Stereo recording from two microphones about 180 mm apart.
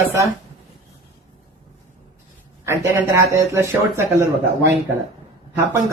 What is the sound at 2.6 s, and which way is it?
Speech, 15° right (ahead or behind).